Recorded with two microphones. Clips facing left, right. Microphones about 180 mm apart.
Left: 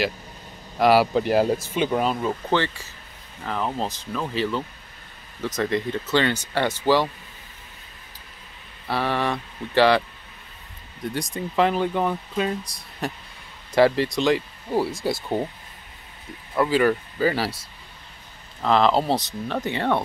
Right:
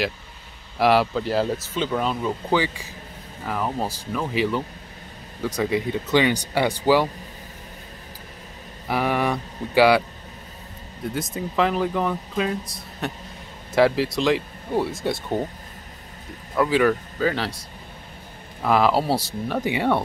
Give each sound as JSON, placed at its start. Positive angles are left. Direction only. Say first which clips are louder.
{"t": 0.7, "sound": "speech", "louder": "left 1 dB", "side_deg": 0}
{"t": 1.1, "sound": "speech", "louder": "left 3 dB", "side_deg": 15}
{"t": 2.5, "sound": "speech", "louder": "right 3 dB", "side_deg": -10}
{"t": 8.8, "sound": "speech", "louder": "right 2 dB", "side_deg": -15}
{"t": 11.1, "sound": "speech", "louder": "left 1 dB", "side_deg": 0}
{"t": 16.5, "sound": "speech", "louder": "right 1 dB", "side_deg": 0}
{"t": 18.6, "sound": "speech", "louder": "even", "side_deg": -10}